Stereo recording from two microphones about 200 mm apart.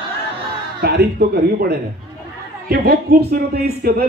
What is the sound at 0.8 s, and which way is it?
A man's voice, 50° right (ahead or behind).